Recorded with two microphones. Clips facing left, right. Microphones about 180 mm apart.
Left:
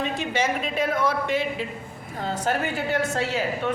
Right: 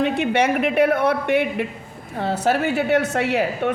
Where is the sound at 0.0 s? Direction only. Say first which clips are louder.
Right 7 dB; 65° right (ahead or behind).